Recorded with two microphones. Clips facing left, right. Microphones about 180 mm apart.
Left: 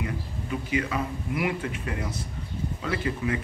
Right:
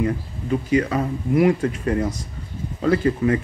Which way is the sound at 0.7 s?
40° right (ahead or behind).